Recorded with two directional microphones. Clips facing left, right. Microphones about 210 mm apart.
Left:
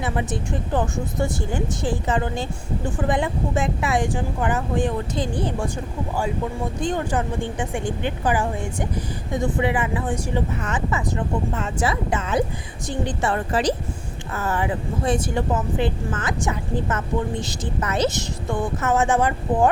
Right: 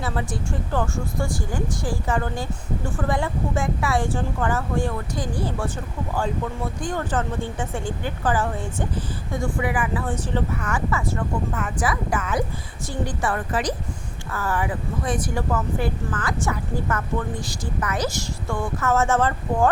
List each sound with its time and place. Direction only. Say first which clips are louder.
0.0 s speech: left 2 dB; 20° left (ahead or behind)
6.8 s a woman's voice: left 2 dB; 15° left (ahead or behind)